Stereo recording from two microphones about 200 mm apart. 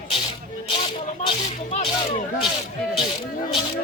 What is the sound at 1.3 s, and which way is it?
Music, 30° left (ahead or behind).